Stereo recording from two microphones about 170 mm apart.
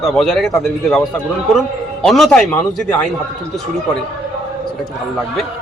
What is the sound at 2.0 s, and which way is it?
Speech, centre (ahead or behind).